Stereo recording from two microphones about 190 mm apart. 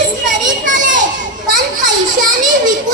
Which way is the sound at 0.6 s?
45° right (ahead or behind).